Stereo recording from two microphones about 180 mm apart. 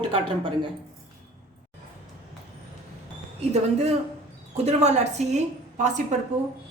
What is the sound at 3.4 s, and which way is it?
A woman's voice, 35° right (ahead or behind).